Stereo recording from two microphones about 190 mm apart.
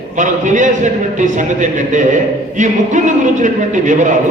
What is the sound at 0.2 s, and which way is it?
A man's voice, 40° right (ahead or behind).